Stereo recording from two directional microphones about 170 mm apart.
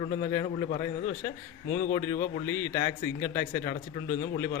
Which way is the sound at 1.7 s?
50° left (ahead or behind).